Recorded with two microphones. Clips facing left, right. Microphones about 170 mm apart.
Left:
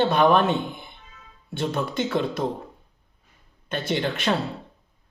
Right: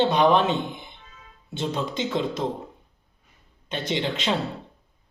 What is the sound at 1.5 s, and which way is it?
Speech, 20° right (ahead or behind).